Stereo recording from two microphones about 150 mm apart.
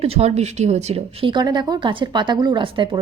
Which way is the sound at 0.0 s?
45° right (ahead or behind).